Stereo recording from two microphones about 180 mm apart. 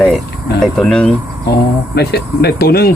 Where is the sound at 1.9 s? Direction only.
60° left (ahead or behind).